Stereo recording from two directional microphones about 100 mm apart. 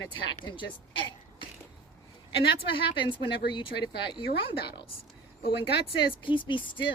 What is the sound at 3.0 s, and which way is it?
Speech, 55° left (ahead or behind).